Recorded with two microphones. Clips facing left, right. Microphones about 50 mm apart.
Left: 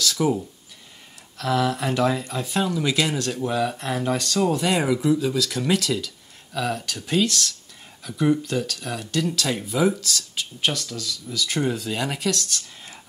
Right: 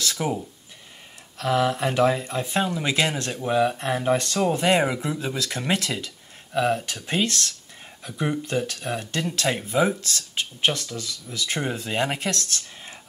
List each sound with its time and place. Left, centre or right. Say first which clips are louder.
0.0 s speech: left 4 dB; right
1.4 s speech: right 1 dB; centre